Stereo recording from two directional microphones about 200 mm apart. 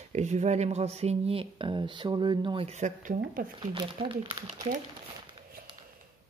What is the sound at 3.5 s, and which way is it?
Speech, 25° right (ahead or behind).